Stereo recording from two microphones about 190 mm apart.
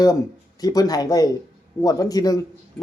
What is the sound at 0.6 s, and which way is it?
A man's voice, 20° left (ahead or behind).